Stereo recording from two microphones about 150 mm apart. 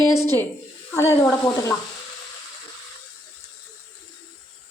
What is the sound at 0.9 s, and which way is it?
Speech, 15° left (ahead or behind).